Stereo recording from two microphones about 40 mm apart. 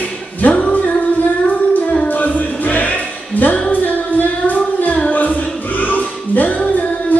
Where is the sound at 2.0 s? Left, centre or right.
Left.